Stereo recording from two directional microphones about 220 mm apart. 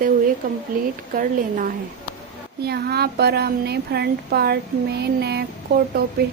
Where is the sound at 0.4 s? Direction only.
40° right (ahead or behind).